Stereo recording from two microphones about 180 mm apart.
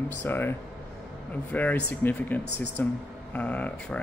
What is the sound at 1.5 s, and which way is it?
Speech, 10° left (ahead or behind).